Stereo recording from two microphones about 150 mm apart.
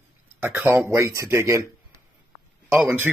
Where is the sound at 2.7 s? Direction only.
15° right (ahead or behind).